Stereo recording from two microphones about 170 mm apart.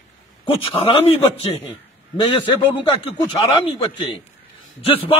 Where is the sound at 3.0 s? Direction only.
30° left (ahead or behind).